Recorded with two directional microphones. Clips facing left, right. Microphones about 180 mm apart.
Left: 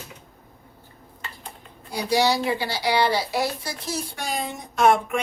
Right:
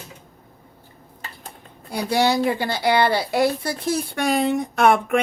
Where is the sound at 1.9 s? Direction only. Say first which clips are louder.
Right 2 dB; 55° right (ahead or behind).